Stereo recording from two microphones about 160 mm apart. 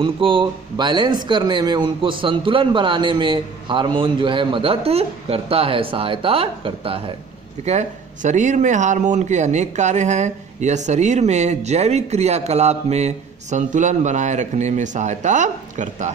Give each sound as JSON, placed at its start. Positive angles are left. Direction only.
{"t": 0.0, "sound": "speech", "side_deg": -30}
{"t": 7.6, "sound": "speech", "side_deg": -45}